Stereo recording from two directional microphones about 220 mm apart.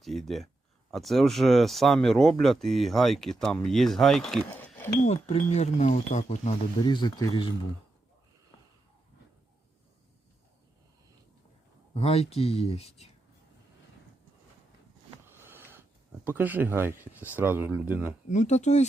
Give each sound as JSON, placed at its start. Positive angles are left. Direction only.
{"t": 0.0, "sound": "speech", "side_deg": 0}
{"t": 5.0, "sound": "speech", "side_deg": 30}
{"t": 6.8, "sound": "speech", "side_deg": 20}
{"t": 11.9, "sound": "speech", "side_deg": 30}
{"t": 15.4, "sound": "a sound", "side_deg": -10}
{"t": 16.2, "sound": "speech", "side_deg": -10}
{"t": 18.3, "sound": "speech", "side_deg": 30}